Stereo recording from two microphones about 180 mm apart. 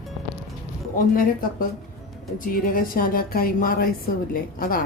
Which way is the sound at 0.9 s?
50° left (ahead or behind).